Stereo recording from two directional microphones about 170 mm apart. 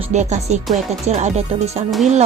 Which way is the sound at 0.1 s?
45° right (ahead or behind).